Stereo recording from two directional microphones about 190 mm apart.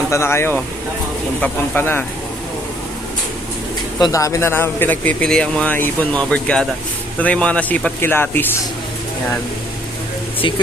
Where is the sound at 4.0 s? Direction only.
15° left (ahead or behind).